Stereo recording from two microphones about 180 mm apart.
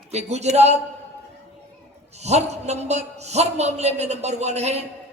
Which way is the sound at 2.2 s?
40° right (ahead or behind).